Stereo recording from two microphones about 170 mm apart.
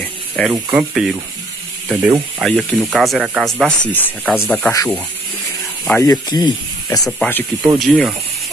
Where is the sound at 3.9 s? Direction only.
10° left (ahead or behind).